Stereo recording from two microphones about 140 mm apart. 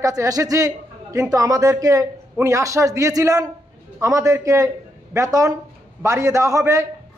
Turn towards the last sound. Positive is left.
turn(degrees=-20)  # may be behind; listen again after turning